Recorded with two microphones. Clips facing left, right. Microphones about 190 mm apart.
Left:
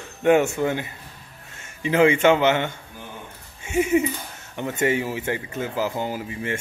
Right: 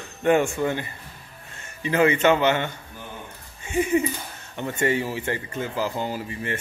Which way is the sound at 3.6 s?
10° left (ahead or behind).